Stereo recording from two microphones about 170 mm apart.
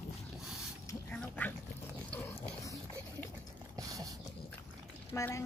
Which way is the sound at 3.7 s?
20° right (ahead or behind).